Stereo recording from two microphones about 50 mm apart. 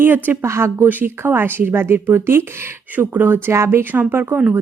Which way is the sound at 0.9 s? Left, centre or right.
Right.